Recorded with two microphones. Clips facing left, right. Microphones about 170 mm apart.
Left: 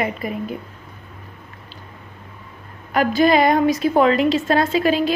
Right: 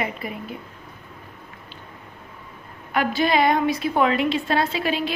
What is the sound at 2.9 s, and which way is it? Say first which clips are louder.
A woman's voice: left 5 dB; 45° left (ahead or behind).